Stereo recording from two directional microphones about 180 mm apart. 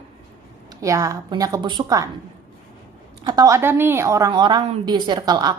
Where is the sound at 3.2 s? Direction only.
20° right (ahead or behind).